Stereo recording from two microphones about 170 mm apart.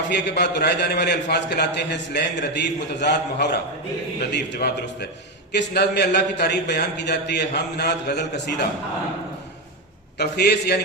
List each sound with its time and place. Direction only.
0.1 s a man's voice: 90° left
4.3 s a man's voice: 75° left (ahead or behind)
10.2 s a man's voice: 75° left (ahead or behind)